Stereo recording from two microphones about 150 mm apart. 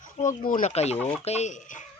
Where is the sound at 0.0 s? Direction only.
60° left (ahead or behind).